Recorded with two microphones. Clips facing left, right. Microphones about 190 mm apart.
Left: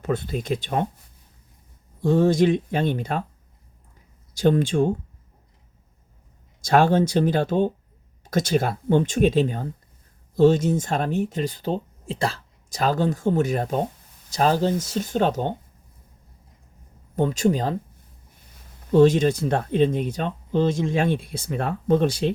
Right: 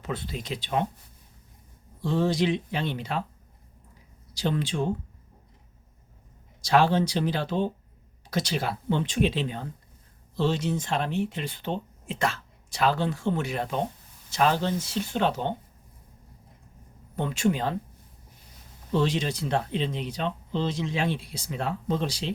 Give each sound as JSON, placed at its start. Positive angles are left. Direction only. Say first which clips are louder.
{"t": 0.0, "sound": "speech", "louder": "left 8 dB", "side_deg": 50}
{"t": 2.0, "sound": "speech", "louder": "left 7 dB", "side_deg": 50}
{"t": 4.4, "sound": "speech", "louder": "left 8 dB", "side_deg": 50}
{"t": 6.6, "sound": "speech", "louder": "left 4 dB", "side_deg": 50}
{"t": 17.2, "sound": "speech", "louder": "left 5 dB", "side_deg": 40}
{"t": 18.9, "sound": "speech", "louder": "left 10 dB", "side_deg": 50}